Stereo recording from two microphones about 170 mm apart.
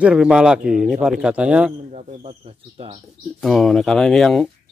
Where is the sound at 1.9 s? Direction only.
45° right (ahead or behind).